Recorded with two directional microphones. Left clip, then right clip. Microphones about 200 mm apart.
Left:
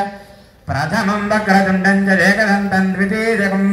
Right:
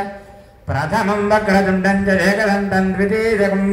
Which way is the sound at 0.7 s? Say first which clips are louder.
Even; 55° right (ahead or behind).